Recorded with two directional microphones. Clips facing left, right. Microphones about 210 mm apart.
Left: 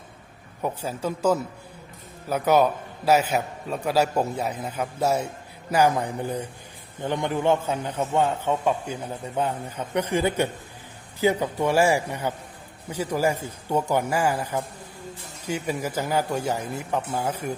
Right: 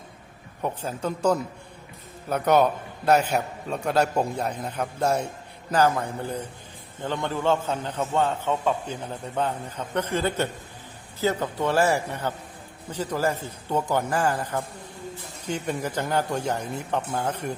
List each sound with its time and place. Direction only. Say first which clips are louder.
0.6 s a man's voice: left 1 dB; 10° left (ahead or behind)